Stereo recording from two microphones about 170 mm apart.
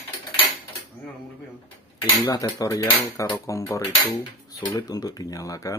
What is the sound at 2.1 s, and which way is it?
Speech, 20° left (ahead or behind).